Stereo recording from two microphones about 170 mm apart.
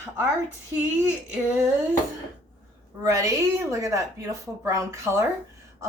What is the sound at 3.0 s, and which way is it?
Speech, 20° right (ahead or behind).